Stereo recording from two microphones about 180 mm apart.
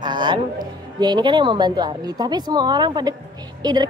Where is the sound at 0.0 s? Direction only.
25° right (ahead or behind).